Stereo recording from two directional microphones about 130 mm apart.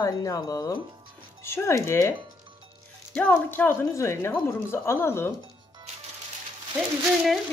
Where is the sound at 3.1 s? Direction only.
15° left (ahead or behind).